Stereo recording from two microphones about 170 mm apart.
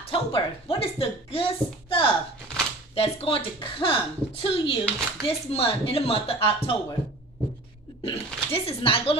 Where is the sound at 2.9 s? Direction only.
35° left (ahead or behind).